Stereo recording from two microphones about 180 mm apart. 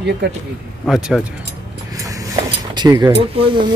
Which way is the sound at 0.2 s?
75° right (ahead or behind).